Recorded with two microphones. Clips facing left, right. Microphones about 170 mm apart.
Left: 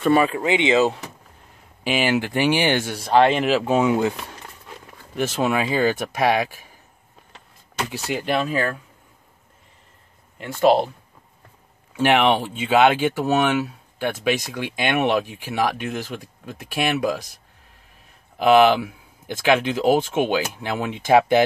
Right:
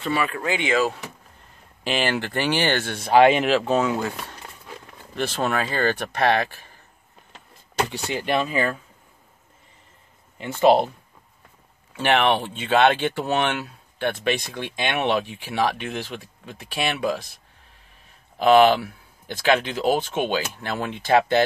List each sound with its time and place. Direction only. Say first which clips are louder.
0.0 s speech: left 7 dB; 50° left (ahead or behind)
0.3 s speech: left 5 dB; 20° left (ahead or behind)
1.9 s speech: left 3 dB; 10° left (ahead or behind)
3.1 s speech: right 1 dB; 5° right (ahead or behind)
3.4 s speech: left 2 dB; 10° left (ahead or behind)
5.1 s speech: left 3 dB; 10° left (ahead or behind)
7.9 s speech: left 4 dB; centre (ahead or behind)
10.6 s speech: even; centre (ahead or behind)
12.0 s speech: left 2 dB; 10° left (ahead or behind)
18.4 s speech: even; 10° left (ahead or behind)